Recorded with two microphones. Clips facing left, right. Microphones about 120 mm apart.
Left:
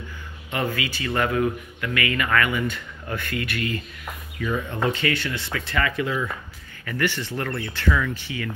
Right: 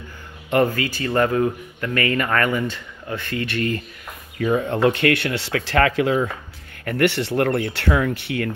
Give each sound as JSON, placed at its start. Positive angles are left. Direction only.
{"t": 0.5, "sound": "speech", "side_deg": -50}
{"t": 3.1, "sound": "speech", "side_deg": -25}
{"t": 4.8, "sound": "speech", "side_deg": -65}
{"t": 6.8, "sound": "speech", "side_deg": -60}